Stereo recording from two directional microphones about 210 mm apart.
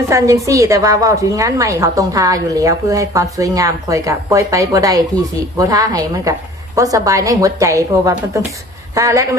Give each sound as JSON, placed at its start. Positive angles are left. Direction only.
{"t": 0.1, "sound": "a woman's voice", "side_deg": -15}